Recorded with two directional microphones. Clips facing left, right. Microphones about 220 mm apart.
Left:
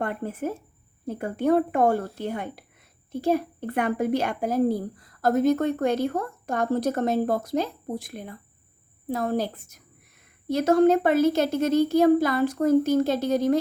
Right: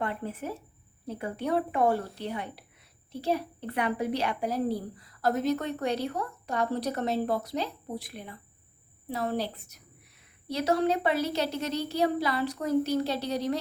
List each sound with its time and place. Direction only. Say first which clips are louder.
0.0 s a woman's voice: left 5 dB; 50° left (ahead or behind)